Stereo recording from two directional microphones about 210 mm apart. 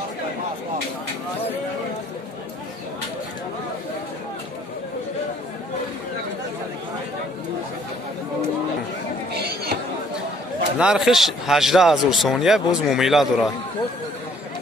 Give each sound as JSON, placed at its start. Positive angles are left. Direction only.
{"t": 9.3, "sound": "chatter", "side_deg": -50}
{"t": 10.8, "sound": "speech", "side_deg": -5}